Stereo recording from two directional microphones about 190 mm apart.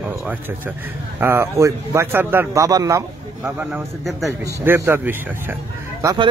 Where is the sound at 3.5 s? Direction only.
5° right (ahead or behind).